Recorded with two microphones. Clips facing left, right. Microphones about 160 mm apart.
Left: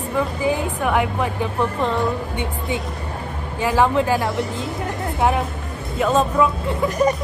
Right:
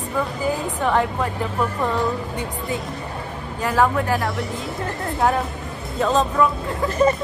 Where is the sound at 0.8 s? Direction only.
10° left (ahead or behind).